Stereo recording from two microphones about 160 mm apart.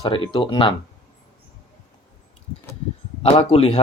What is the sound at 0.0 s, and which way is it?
Speech, 30° left (ahead or behind).